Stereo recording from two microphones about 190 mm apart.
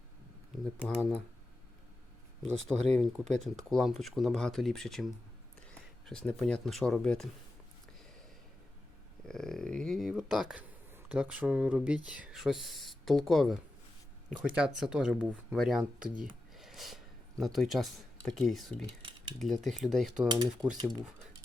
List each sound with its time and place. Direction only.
0.8 s speech: 5° left (ahead or behind)
2.4 s speech: 5° left (ahead or behind)
9.2 s speech: 5° left (ahead or behind)
16.6 s a sound: centre (ahead or behind)
17.4 s speech: centre (ahead or behind)
20.2 s speech: 20° right (ahead or behind)